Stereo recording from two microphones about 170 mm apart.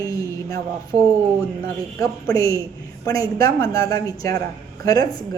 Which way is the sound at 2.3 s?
20° left (ahead or behind).